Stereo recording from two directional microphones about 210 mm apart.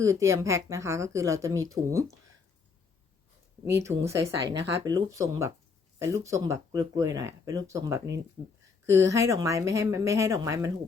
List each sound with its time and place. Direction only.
0.0 s speech: 15° right (ahead or behind)
3.7 s speech: 15° right (ahead or behind)
8.4 s speech: 5° left (ahead or behind)
8.9 s speech: 15° right (ahead or behind)